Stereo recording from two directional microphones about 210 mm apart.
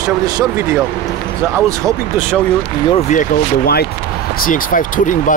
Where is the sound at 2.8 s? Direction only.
30° left (ahead or behind).